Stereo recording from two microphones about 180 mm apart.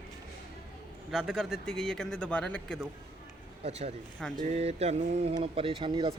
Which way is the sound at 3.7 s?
35° right (ahead or behind).